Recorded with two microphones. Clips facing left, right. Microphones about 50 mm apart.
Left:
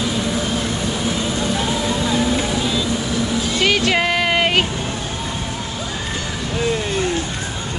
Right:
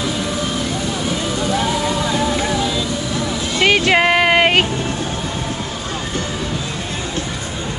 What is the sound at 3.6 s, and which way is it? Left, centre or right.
Music, right.